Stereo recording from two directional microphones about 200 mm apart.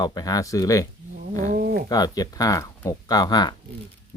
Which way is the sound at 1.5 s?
50° right (ahead or behind).